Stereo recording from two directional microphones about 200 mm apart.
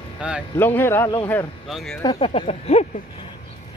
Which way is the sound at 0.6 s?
10° left (ahead or behind).